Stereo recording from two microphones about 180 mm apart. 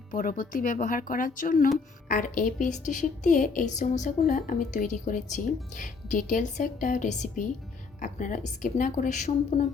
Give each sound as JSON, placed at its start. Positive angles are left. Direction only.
{"t": 0.1, "sound": "speech", "side_deg": 50}